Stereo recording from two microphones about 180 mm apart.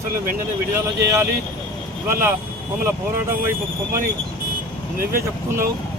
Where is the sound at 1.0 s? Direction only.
15° right (ahead or behind).